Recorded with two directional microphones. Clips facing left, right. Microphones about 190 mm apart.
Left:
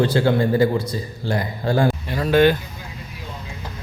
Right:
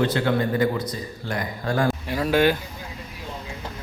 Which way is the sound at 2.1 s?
10° right (ahead or behind).